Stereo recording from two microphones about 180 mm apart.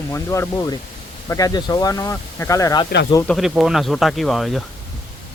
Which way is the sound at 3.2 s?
Centre (ahead or behind).